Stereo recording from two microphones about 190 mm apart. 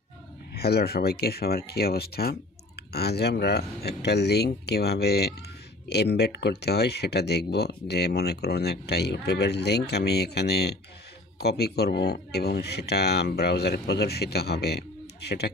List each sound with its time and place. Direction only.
0.6 s speech: 55° left (ahead or behind)